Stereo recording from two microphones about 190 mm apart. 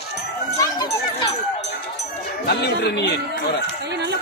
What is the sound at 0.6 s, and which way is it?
Speech, 20° left (ahead or behind).